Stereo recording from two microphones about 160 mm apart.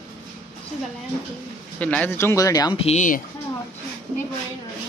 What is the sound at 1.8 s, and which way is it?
Speech, 10° left (ahead or behind).